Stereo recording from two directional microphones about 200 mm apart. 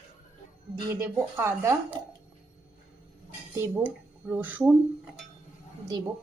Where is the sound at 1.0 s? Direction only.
10° right (ahead or behind).